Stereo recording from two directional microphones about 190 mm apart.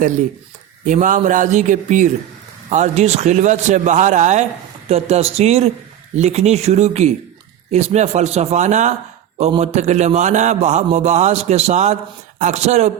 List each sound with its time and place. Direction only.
0.9 s a man's voice: 40° right (ahead or behind)